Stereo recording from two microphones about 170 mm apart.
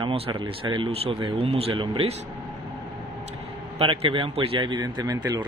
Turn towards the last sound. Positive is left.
turn(degrees=-25)  # may be behind; listen again after turning